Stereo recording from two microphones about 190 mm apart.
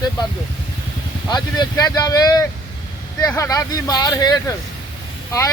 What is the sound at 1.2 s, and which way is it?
Speech, 20° left (ahead or behind).